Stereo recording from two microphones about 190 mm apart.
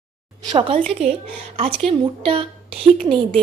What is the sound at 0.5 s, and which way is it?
A woman's voice, 25° right (ahead or behind).